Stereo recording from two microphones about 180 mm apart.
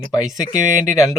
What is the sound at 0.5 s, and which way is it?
Speech, 45° right (ahead or behind).